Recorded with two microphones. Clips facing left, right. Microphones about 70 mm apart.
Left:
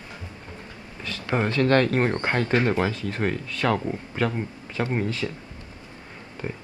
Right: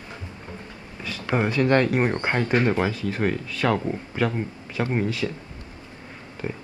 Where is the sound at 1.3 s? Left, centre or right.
Centre.